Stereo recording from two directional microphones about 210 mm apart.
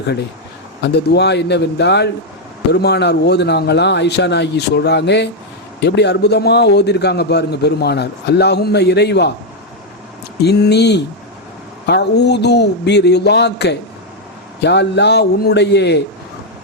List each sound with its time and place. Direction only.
0.8 s a man's voice: 55° left (ahead or behind)
10.4 s a man's voice: 50° left (ahead or behind)